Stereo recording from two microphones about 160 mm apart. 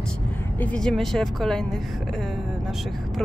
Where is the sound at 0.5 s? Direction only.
10° left (ahead or behind).